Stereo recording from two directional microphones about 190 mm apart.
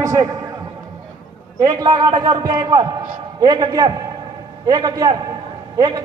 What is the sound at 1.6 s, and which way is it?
A man's voice, 20° right (ahead or behind).